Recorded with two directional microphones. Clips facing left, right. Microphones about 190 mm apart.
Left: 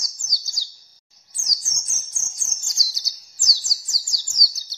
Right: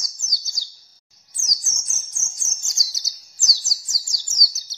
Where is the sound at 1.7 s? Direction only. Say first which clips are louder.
Even; 20° right (ahead or behind).